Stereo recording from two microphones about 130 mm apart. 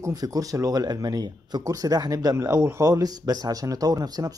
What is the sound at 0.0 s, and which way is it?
Speech, 30° right (ahead or behind).